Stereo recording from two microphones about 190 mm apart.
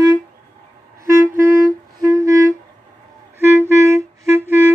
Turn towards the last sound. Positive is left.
turn(degrees=-10)  # may be behind; listen again after turning